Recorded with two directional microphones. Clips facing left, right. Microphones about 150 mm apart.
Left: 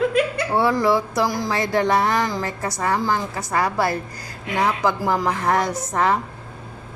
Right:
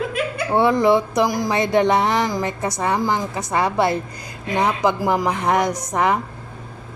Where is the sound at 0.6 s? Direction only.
20° right (ahead or behind).